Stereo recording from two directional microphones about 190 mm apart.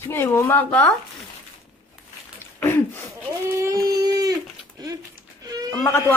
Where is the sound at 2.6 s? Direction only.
10° left (ahead or behind).